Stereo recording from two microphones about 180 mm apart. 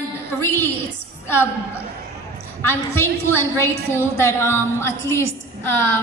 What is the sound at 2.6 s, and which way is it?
A woman's voice, 15° left (ahead or behind).